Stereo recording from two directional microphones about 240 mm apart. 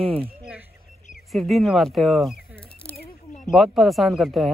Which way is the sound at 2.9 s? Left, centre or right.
Left.